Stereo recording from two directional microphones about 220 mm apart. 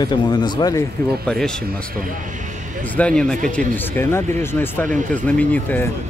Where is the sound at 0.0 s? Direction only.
20° left (ahead or behind).